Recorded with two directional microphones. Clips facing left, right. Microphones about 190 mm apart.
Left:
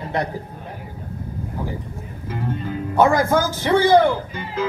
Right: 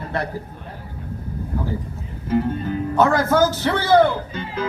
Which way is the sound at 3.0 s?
10° left (ahead or behind).